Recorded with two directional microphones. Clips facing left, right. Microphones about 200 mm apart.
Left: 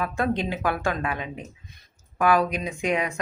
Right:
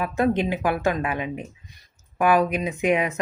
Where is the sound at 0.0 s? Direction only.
15° right (ahead or behind).